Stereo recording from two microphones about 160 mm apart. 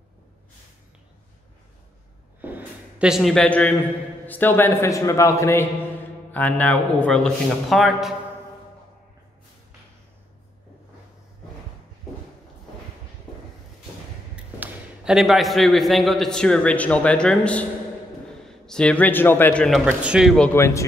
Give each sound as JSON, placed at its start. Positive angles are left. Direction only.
{"t": 2.4, "sound": "a sound", "side_deg": -10}
{"t": 4.3, "sound": "a man's voice", "side_deg": 10}
{"t": 14.3, "sound": "a man's voice", "side_deg": -5}
{"t": 18.7, "sound": "a man's voice", "side_deg": 5}
{"t": 19.8, "sound": "a man's voice", "side_deg": -5}
{"t": 20.4, "sound": "a man's voice", "side_deg": 15}